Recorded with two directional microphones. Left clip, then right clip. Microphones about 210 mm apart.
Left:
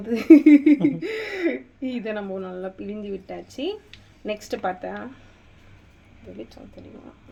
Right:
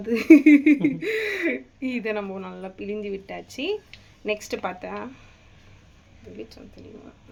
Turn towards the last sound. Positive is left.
turn(degrees=-10)  # may be behind; listen again after turning